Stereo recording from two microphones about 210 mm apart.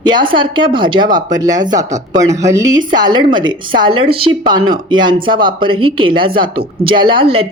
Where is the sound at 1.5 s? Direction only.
35° right (ahead or behind).